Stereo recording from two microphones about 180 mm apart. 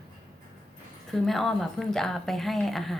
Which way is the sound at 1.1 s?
Centre (ahead or behind).